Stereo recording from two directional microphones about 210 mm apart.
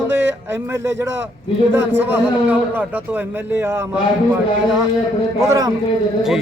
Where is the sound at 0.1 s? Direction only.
10° right (ahead or behind).